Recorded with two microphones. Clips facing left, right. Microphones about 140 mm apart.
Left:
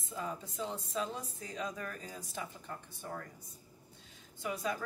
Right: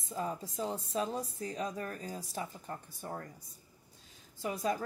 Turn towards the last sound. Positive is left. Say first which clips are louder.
# right 3 dB
turn(degrees=-40)  # may be behind; listen again after turning